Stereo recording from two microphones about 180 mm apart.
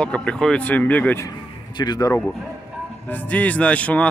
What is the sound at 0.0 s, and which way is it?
Speech, 5° left (ahead or behind).